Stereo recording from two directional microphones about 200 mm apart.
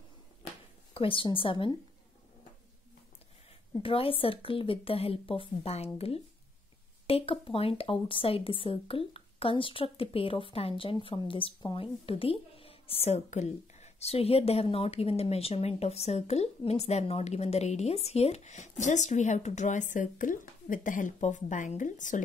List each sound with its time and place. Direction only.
0.9 s a woman's voice: 25° left (ahead or behind)
3.8 s a woman's voice: 25° left (ahead or behind)